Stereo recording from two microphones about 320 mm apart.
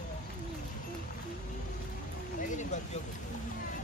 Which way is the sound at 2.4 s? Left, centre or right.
Left.